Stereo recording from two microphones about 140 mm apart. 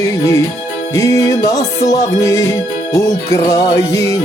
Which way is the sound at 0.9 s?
25° left (ahead or behind).